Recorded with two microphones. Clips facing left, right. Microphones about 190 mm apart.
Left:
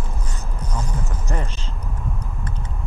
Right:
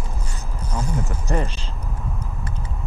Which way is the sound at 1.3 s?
10° right (ahead or behind).